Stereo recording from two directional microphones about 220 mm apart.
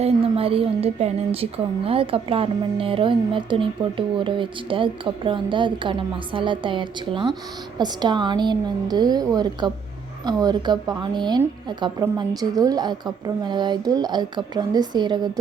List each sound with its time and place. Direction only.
0.0 s a woman's voice: 25° right (ahead or behind)